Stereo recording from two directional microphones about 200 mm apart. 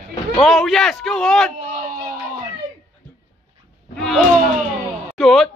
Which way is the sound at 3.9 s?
Centre (ahead or behind).